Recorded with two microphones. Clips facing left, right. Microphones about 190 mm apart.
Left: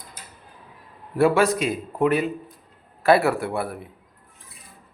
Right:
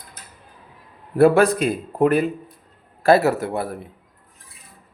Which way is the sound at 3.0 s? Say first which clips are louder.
Right 2 dB; 40° right (ahead or behind).